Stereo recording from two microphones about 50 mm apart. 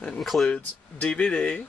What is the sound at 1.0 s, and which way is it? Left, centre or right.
Speech, left.